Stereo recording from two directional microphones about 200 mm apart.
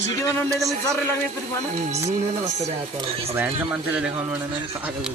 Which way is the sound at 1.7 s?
35° right (ahead or behind).